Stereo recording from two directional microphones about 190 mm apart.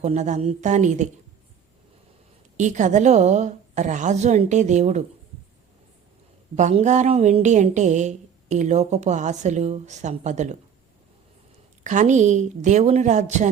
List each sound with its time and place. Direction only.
0.0 s a woman's voice: 35° right (ahead or behind)
2.6 s a woman's voice: 40° right (ahead or behind)
6.6 s a woman's voice: 40° right (ahead or behind)
11.8 s a woman's voice: 40° right (ahead or behind)